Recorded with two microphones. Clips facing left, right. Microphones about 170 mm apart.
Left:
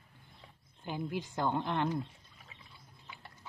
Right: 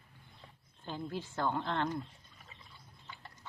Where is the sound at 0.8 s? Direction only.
15° left (ahead or behind).